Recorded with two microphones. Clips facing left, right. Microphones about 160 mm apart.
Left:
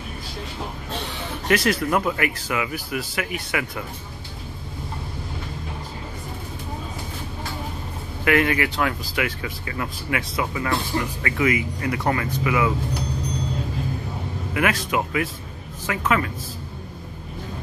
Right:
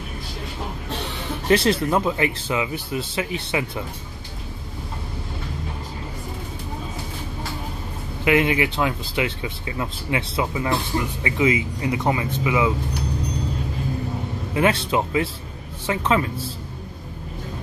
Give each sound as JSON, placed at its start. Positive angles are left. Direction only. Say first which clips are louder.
{"t": 1.5, "sound": "speech", "louder": "right 2 dB", "side_deg": -30}
{"t": 8.2, "sound": "speech", "louder": "right 1 dB", "side_deg": -20}
{"t": 14.5, "sound": "speech", "louder": "right 3 dB", "side_deg": -30}